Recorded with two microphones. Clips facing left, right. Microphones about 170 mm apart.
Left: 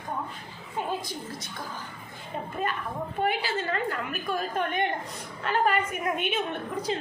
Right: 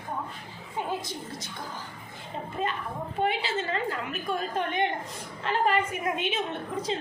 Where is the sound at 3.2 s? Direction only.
25° right (ahead or behind).